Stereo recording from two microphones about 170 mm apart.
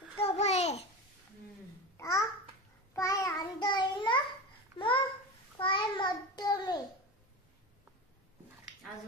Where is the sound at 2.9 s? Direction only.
20° left (ahead or behind).